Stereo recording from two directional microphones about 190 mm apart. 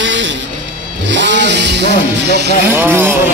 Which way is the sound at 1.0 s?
70° right (ahead or behind).